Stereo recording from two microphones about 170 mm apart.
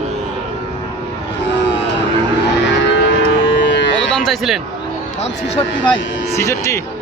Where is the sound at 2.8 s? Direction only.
90° left.